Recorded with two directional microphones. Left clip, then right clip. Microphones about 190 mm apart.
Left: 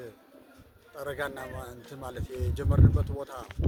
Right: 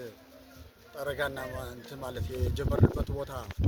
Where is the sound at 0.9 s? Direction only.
15° left (ahead or behind).